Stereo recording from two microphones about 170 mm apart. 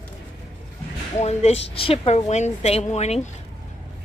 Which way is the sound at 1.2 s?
40° left (ahead or behind).